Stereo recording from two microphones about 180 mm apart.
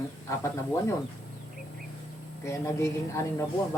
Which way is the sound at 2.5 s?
15° left (ahead or behind).